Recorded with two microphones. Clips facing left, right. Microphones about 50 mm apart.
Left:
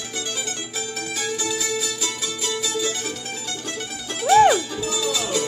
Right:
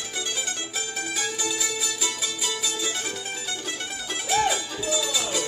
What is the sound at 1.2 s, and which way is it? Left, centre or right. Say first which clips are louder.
Music: left 4 dB; centre.